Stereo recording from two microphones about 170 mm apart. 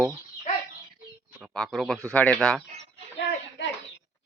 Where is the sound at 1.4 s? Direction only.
Centre (ahead or behind).